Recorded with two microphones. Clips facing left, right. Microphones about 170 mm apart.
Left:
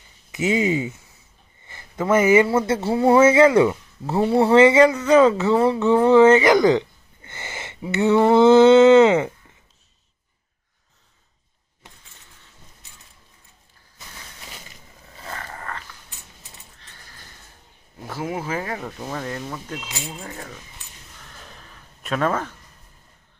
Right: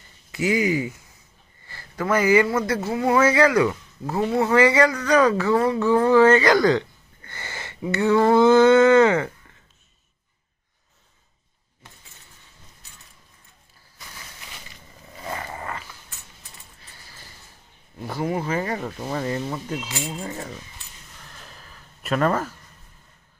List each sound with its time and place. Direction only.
0.3 s a man's voice: 25° left (ahead or behind)
15.2 s roaring cats: 15° right (ahead or behind)
18.0 s speech: centre (ahead or behind)
21.3 s a sound: centre (ahead or behind)